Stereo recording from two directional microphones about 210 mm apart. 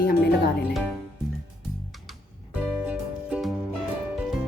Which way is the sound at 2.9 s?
5° right (ahead or behind).